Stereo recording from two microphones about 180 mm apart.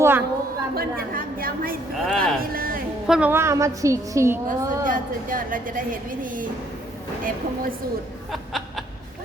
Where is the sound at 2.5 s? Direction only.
50° right (ahead or behind).